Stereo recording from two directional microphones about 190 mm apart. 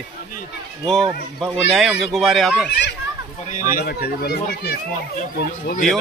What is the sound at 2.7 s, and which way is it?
Speech, 60° left (ahead or behind).